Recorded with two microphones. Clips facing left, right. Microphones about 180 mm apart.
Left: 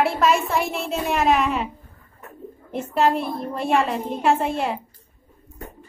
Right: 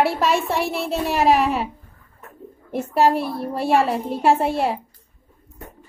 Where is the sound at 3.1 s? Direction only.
5° right (ahead or behind).